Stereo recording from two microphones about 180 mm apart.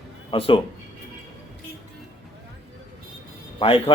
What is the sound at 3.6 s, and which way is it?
Speech, 30° left (ahead or behind).